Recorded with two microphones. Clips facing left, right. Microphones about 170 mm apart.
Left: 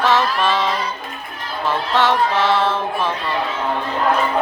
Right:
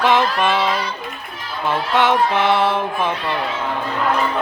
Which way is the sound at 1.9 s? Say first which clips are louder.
Right 1 dB; 15° right (ahead or behind).